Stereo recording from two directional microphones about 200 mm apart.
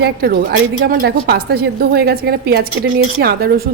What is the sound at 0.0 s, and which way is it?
A woman's voice, 50° right (ahead or behind).